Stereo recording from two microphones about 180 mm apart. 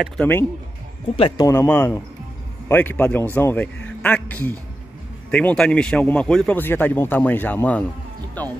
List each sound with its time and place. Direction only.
0.0 s a man's voice: 10° left (ahead or behind)
1.1 s a man's voice: 25° left (ahead or behind); by 7.8 s 10° left (ahead or behind)